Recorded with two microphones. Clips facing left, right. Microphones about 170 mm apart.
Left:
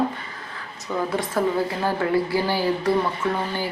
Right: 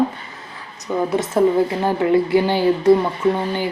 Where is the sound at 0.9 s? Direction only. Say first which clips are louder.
Right 5 dB; 15° right (ahead or behind).